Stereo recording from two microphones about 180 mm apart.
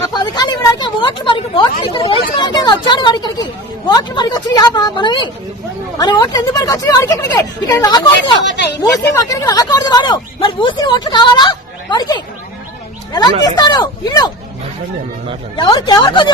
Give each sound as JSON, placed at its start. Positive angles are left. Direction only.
{"t": 0.1, "sound": "a sound", "side_deg": 25}
{"t": 1.2, "sound": "speech", "side_deg": 25}
{"t": 8.4, "sound": "a woman's voice", "side_deg": 75}
{"t": 9.1, "sound": "speech", "side_deg": 20}
{"t": 13.4, "sound": "speech", "side_deg": 25}
{"t": 15.5, "sound": "speech", "side_deg": 25}